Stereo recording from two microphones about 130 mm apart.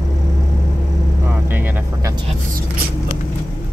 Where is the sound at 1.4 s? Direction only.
15° right (ahead or behind).